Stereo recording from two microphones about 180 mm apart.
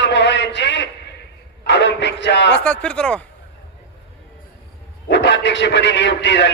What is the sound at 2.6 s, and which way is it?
Speech, 5° left (ahead or behind).